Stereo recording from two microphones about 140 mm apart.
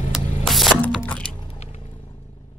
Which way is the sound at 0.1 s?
Centre (ahead or behind).